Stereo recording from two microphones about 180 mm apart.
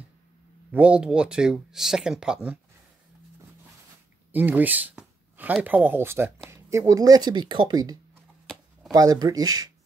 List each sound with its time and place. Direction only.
0.7 s speech: 5° right (ahead or behind)
4.3 s speech: 10° right (ahead or behind)